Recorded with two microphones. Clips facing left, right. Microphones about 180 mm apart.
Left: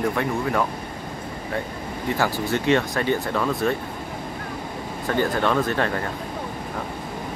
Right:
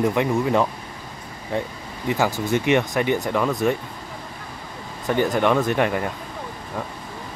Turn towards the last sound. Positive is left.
turn(degrees=-15)  # may be behind; listen again after turning